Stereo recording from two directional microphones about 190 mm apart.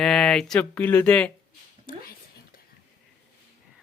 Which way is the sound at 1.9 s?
50° left (ahead or behind).